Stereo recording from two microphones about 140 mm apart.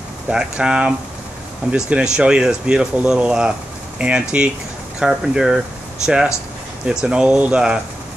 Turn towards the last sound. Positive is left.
turn(degrees=-5)  # may be behind; listen again after turning